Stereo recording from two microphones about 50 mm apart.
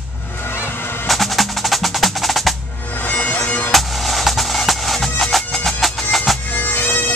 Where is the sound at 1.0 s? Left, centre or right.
Centre.